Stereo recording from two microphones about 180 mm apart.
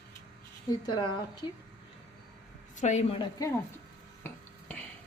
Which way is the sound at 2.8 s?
40° left (ahead or behind).